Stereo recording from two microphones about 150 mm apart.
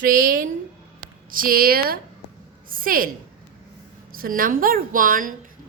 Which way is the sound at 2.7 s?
70° right (ahead or behind).